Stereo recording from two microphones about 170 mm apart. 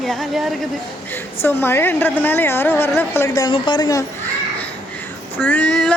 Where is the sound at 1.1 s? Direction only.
15° left (ahead or behind).